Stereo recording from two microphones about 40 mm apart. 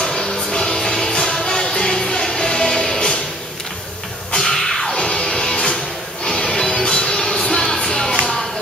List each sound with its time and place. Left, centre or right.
0.0 s music: centre
4.4 s music: centre